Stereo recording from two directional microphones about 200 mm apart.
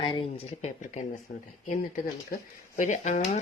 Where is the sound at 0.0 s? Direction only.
25° left (ahead or behind).